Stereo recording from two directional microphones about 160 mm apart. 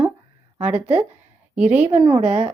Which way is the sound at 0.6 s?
5° right (ahead or behind).